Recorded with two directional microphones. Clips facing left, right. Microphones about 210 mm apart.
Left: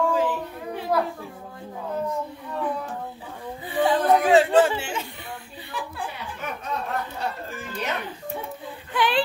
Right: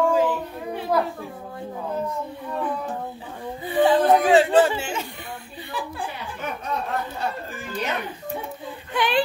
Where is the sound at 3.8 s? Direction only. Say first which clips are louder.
Right 3 dB; 30° right (ahead or behind).